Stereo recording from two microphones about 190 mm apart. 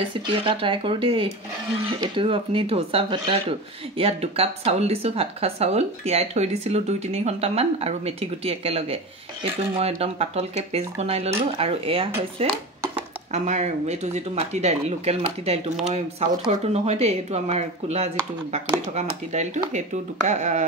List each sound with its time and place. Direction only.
0.3 s speech: 30° right (ahead or behind)
19.3 s speech: 40° right (ahead or behind)